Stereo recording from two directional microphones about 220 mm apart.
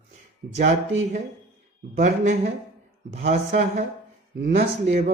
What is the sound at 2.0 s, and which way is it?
Speech, 35° right (ahead or behind).